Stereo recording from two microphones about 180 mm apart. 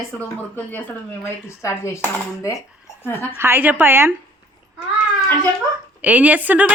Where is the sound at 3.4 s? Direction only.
10° right (ahead or behind).